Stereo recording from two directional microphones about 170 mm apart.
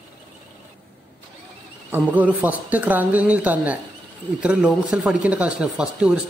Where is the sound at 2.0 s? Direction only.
10° right (ahead or behind).